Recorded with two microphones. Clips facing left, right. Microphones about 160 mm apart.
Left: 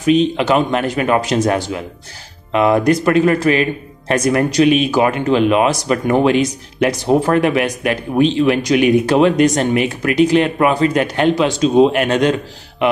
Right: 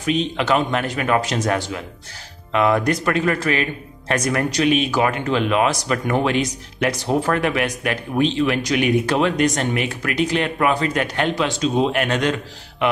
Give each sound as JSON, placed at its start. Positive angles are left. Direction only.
{"t": 0.0, "sound": "speech", "side_deg": 15}
{"t": 2.5, "sound": "speech", "side_deg": 20}
{"t": 8.2, "sound": "speech", "side_deg": 15}